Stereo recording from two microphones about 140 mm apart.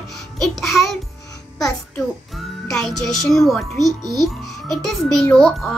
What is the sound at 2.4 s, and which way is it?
A child's voice, centre (ahead or behind).